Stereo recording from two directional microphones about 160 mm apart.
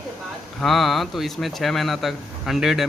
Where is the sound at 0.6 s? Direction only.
Centre (ahead or behind).